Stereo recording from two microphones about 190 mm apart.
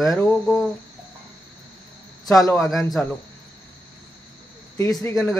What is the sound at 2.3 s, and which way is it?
Speech, 20° left (ahead or behind).